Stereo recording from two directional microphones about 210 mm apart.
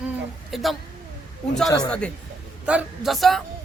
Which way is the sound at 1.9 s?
5° left (ahead or behind).